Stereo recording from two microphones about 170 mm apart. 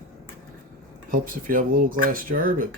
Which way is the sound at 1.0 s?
55° right (ahead or behind).